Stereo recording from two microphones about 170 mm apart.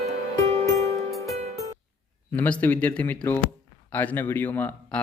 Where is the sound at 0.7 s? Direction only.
15° left (ahead or behind).